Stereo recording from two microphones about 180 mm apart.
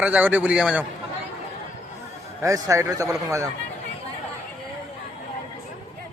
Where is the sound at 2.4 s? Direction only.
15° right (ahead or behind).